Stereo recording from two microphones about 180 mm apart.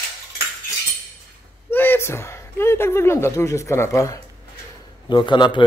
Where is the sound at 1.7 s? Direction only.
10° left (ahead or behind).